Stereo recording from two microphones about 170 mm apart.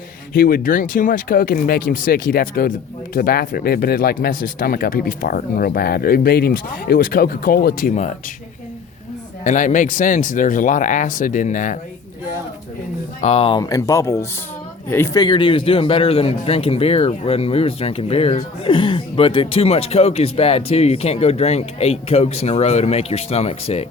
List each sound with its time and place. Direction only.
0.3 s speech: 60° left (ahead or behind)
9.4 s speech: 45° left (ahead or behind)
13.2 s speech: 35° left (ahead or behind)
13.6 s speech: 20° left (ahead or behind)
15.2 s speech: 30° left (ahead or behind)